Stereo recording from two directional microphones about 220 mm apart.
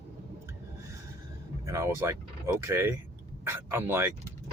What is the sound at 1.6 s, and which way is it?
Speech, 15° right (ahead or behind).